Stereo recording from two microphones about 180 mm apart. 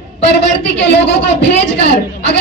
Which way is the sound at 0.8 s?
70° left (ahead or behind).